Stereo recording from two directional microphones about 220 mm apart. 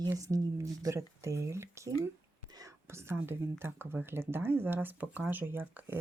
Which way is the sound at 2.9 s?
10° right (ahead or behind).